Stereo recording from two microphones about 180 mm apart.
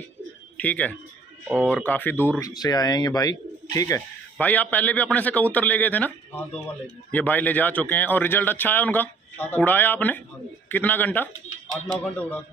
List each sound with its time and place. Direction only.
0.6 s a man's voice: 10° left (ahead or behind)
2.5 s speech: 20° left (ahead or behind)
4.4 s a man's voice: 10° left (ahead or behind)